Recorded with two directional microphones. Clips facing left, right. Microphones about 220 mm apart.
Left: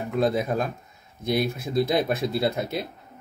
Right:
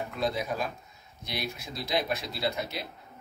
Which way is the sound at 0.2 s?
45° left (ahead or behind).